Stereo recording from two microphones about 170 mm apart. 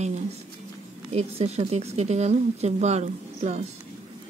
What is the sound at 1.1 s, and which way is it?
Speech, 40° right (ahead or behind).